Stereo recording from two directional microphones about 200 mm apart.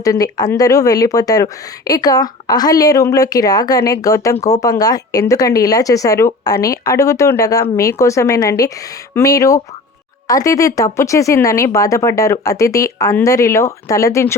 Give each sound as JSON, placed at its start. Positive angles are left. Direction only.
{"t": 0.0, "sound": "speech", "side_deg": 15}